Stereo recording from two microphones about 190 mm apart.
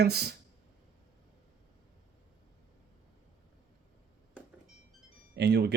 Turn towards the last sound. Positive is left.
turn(degrees=-60)  # may be behind; listen again after turning